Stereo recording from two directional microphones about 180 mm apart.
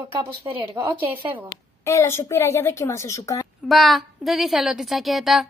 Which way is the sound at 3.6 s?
Centre (ahead or behind).